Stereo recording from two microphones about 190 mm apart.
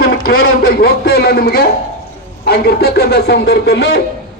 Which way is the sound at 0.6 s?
55° left (ahead or behind).